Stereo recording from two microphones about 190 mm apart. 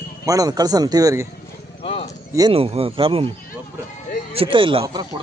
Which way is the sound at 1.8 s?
30° left (ahead or behind).